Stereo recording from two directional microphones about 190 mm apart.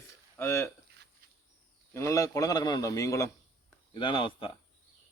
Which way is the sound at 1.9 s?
15° left (ahead or behind).